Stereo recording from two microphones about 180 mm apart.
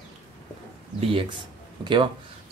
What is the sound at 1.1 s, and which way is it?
Speech, 30° right (ahead or behind).